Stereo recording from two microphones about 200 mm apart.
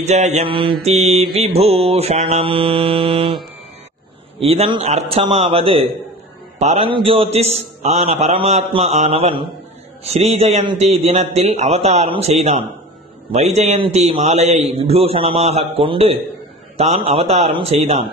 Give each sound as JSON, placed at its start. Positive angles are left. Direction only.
{"t": 0.0, "sound": "a man's voice", "side_deg": -35}
{"t": 4.4, "sound": "a man's voice", "side_deg": -30}